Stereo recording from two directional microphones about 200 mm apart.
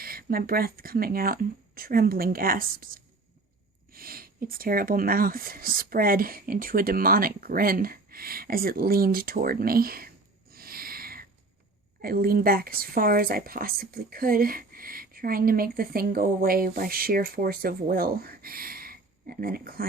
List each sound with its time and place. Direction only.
0.0 s a woman's voice: 50° right (ahead or behind)
10.5 s a sound: 50° right (ahead or behind)
12.0 s a woman's voice: 50° right (ahead or behind)